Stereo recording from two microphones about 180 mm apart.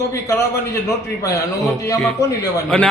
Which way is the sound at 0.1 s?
15° left (ahead or behind).